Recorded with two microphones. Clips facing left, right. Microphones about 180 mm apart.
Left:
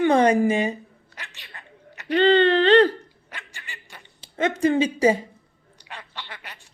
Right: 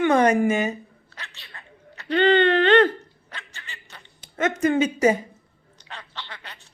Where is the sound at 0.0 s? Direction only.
30° left (ahead or behind).